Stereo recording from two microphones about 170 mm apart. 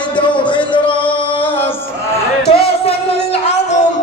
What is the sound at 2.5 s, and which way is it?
Music, 35° left (ahead or behind).